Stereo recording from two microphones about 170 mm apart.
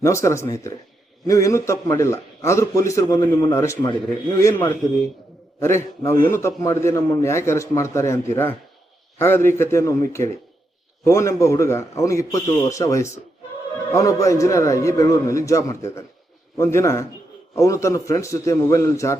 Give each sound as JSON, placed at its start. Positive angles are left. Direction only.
{"t": 0.0, "sound": "a man's voice", "side_deg": 15}